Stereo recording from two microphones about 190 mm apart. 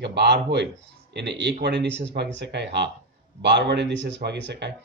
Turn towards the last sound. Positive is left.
turn(degrees=-65)  # may be behind; listen again after turning